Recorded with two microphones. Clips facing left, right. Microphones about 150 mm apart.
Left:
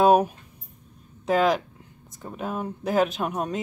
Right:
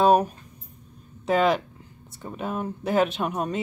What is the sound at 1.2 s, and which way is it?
Speech, centre (ahead or behind).